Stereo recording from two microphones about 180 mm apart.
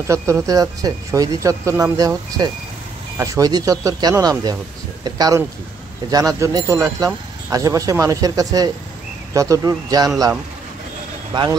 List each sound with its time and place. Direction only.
0.1 s speech: 15° right (ahead or behind)